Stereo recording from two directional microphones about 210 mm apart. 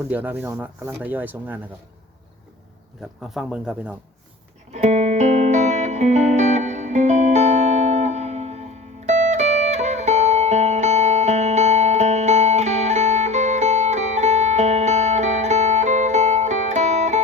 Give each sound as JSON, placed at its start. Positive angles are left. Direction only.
{"t": 0.1, "sound": "speech", "side_deg": -10}
{"t": 3.0, "sound": "speech", "side_deg": 0}
{"t": 4.7, "sound": "music", "side_deg": -35}